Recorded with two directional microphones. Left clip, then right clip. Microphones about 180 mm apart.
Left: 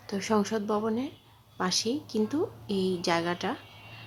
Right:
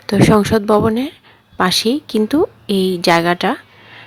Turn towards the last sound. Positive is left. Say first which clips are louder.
# right 15 dB
turn(degrees=-35)  # may be behind; listen again after turning